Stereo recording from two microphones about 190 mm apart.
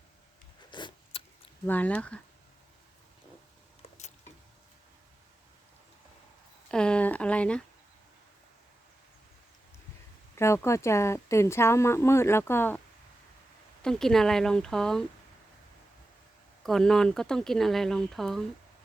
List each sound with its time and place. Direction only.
0.7 s a sound: 25° left (ahead or behind)
1.6 s a woman's voice: 10° left (ahead or behind)
6.7 s a sound: 5° left (ahead or behind)
10.3 s a woman's voice: 15° left (ahead or behind)
13.8 s speech: centre (ahead or behind)
16.6 s speech: centre (ahead or behind)